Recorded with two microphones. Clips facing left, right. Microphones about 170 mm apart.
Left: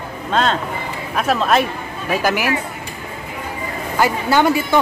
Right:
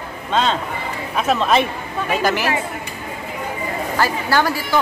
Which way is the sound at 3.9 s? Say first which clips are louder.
Left 3 dB; 20° left (ahead or behind).